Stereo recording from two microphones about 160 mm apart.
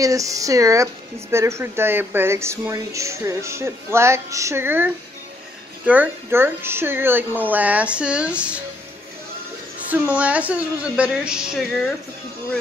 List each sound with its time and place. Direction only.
0.0 s speech: 20° right (ahead or behind)
9.8 s speech: 10° right (ahead or behind)